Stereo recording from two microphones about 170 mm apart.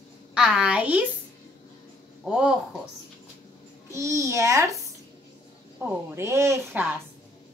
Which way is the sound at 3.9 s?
15° right (ahead or behind).